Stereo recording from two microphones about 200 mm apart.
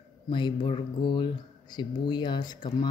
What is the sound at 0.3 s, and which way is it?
Speech, 25° left (ahead or behind).